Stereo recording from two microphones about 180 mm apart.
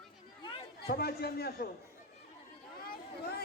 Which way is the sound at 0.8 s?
60° left (ahead or behind).